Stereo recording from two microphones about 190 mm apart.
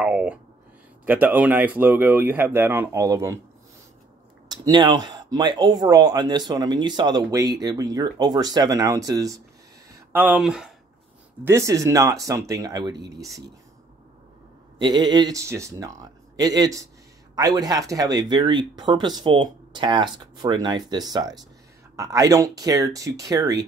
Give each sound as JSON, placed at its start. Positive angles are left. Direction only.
{"t": 0.0, "sound": "speech", "side_deg": -5}
{"t": 4.5, "sound": "speech", "side_deg": -20}
{"t": 10.1, "sound": "speech", "side_deg": -5}
{"t": 11.4, "sound": "speech", "side_deg": -15}
{"t": 14.8, "sound": "speech", "side_deg": -25}